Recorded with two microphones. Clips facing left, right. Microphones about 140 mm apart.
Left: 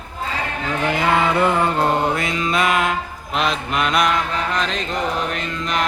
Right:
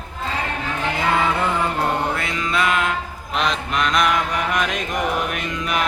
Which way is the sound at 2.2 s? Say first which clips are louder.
Left 2 dB; 20° left (ahead or behind).